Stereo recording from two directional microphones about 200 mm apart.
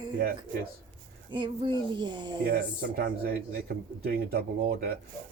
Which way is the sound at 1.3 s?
25° right (ahead or behind).